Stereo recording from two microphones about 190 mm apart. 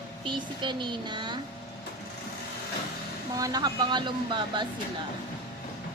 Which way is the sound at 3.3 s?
20° right (ahead or behind).